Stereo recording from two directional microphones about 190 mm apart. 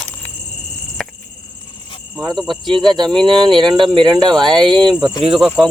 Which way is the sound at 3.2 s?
25° right (ahead or behind).